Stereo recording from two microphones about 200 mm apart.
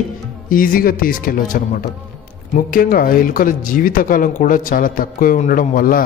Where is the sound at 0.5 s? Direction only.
45° left (ahead or behind).